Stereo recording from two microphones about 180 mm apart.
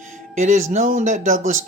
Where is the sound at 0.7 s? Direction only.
40° right (ahead or behind).